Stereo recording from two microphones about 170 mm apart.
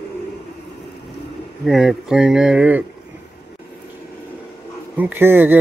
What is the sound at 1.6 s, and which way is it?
Speech, centre (ahead or behind).